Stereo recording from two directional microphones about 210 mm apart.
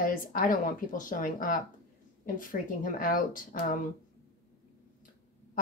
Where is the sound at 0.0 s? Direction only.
40° left (ahead or behind).